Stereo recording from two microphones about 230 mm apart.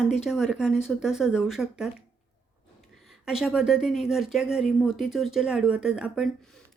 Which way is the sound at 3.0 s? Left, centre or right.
Centre.